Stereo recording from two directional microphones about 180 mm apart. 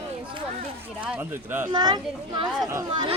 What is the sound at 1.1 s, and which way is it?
Speech, 10° right (ahead or behind).